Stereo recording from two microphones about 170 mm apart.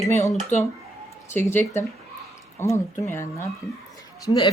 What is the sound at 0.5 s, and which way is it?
Speech, 45° left (ahead or behind).